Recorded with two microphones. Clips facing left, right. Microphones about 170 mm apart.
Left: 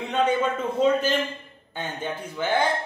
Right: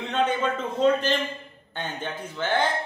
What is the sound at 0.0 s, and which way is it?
A man's voice, 10° left (ahead or behind).